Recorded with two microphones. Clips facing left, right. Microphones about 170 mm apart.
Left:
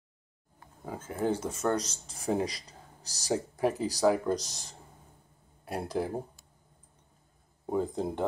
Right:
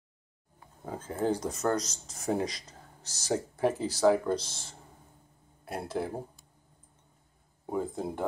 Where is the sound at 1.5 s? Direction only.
30° left (ahead or behind).